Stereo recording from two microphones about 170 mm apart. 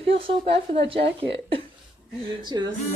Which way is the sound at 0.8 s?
35° right (ahead or behind).